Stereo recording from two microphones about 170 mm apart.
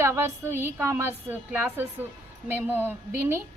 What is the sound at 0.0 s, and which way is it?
A woman's voice, 15° right (ahead or behind).